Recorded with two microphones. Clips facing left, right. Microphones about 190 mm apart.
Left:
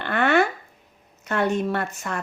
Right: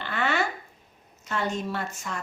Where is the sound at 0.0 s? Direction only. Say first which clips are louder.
Left 7 dB; 60° left (ahead or behind).